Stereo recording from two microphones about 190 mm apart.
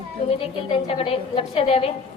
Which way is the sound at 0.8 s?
30° left (ahead or behind).